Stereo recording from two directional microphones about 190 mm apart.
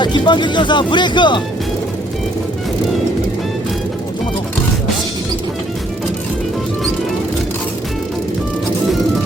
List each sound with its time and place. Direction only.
0.0 s speech: 25° left (ahead or behind)